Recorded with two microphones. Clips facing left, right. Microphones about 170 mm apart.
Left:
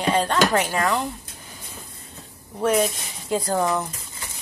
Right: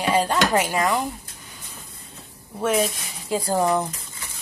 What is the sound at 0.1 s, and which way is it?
Speech, 10° right (ahead or behind).